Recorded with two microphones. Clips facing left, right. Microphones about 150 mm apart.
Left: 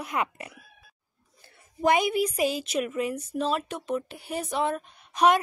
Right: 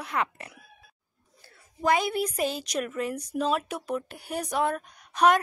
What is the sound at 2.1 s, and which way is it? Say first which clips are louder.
A woman's voice: left 3 dB; 10° left (ahead or behind).